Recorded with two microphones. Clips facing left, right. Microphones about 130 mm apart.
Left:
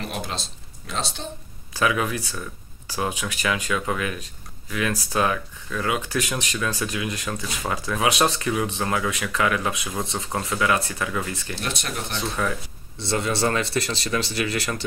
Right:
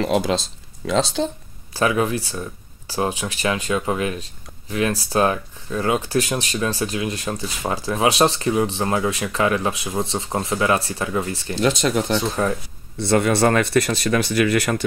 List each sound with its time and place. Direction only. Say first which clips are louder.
0.0 s speech: right 11 dB; 90° right
1.7 s speech: right 4 dB; 30° right (ahead or behind)
11.6 s speech: right 13 dB; 90° right
12.4 s speech: right 2 dB; 35° right (ahead or behind)
12.9 s speech: right 7 dB; 55° right (ahead or behind)